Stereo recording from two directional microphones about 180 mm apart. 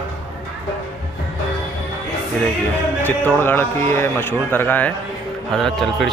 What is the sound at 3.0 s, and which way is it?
A man's voice, 10° left (ahead or behind).